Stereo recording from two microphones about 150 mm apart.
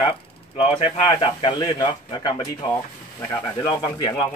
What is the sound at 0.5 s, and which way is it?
Speech, 40° left (ahead or behind).